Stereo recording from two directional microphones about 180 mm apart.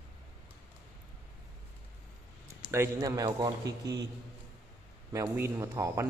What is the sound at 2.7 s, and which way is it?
A man's voice, 15° right (ahead or behind).